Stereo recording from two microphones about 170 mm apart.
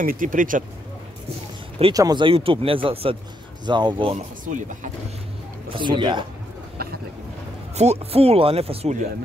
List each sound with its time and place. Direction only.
0.0 s speech: 55° right (ahead or behind)
1.8 s speech: 25° right (ahead or behind)
5.7 s speech: 30° right (ahead or behind)
6.8 s a sound: 65° right (ahead or behind)
7.7 s speech: 40° right (ahead or behind)